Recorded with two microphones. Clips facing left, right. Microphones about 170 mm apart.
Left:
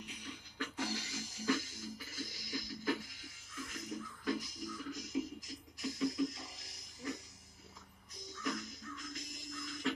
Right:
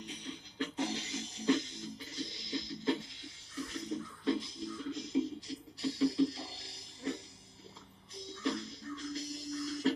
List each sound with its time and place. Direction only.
0.0 s music: 30° right (ahead or behind)